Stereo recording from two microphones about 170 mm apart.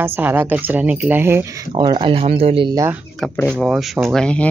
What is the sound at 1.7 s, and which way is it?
Speech, 25° right (ahead or behind).